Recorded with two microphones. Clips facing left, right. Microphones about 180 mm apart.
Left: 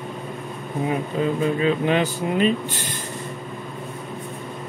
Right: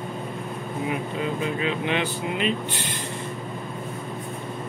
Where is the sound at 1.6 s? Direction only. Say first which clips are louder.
Left 6 dB; 40° left (ahead or behind).